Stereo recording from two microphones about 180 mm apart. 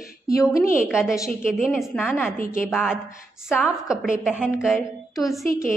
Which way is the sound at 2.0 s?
10° left (ahead or behind).